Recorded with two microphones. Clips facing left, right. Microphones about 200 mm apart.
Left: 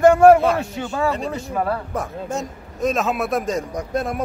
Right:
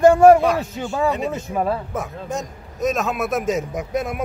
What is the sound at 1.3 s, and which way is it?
Speech, 20° right (ahead or behind).